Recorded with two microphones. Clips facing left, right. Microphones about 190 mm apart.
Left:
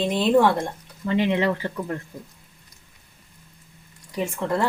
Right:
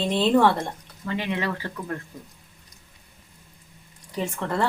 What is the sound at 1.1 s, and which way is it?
Speech, 20° left (ahead or behind).